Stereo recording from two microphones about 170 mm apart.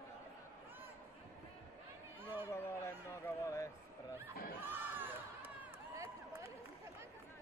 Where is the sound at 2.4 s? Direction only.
15° left (ahead or behind).